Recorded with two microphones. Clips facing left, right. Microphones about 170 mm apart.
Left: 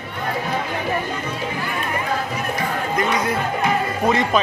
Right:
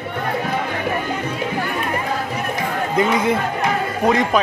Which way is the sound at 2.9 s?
25° right (ahead or behind).